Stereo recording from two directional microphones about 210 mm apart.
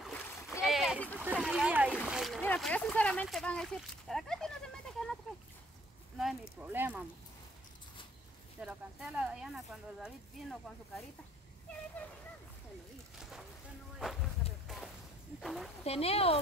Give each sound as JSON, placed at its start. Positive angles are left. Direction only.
{"t": 0.0, "sound": "splash", "side_deg": 0}
{"t": 1.2, "sound": "splash", "side_deg": -5}
{"t": 2.0, "sound": "a sound", "side_deg": 0}
{"t": 6.6, "sound": "speech", "side_deg": -10}
{"t": 8.5, "sound": "speech", "side_deg": -5}
{"t": 13.2, "sound": "a sound", "side_deg": 0}
{"t": 14.7, "sound": "a sound", "side_deg": 0}
{"t": 15.4, "sound": "speech", "side_deg": 0}
{"t": 15.8, "sound": "speech", "side_deg": 30}